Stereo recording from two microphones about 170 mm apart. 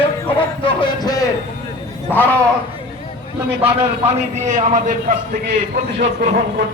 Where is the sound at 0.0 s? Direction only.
30° left (ahead or behind).